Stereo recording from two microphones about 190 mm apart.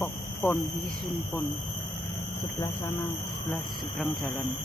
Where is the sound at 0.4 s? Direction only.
10° left (ahead or behind).